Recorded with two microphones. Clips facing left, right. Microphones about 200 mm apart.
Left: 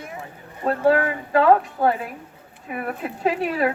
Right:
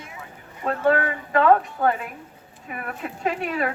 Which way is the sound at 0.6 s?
35° left (ahead or behind).